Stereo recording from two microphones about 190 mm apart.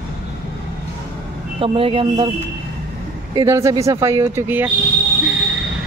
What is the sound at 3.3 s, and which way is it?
Speech, 15° right (ahead or behind).